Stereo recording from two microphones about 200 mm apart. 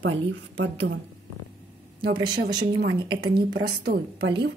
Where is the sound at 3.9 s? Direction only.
60° right (ahead or behind).